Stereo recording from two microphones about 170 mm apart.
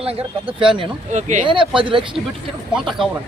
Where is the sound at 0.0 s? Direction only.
35° right (ahead or behind).